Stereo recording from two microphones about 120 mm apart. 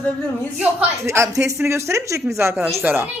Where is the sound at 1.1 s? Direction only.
25° right (ahead or behind).